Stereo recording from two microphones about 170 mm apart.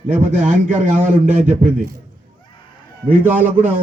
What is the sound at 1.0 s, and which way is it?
Speech, 45° right (ahead or behind).